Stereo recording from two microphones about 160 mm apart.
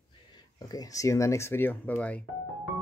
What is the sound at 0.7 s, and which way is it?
Speech, 20° left (ahead or behind).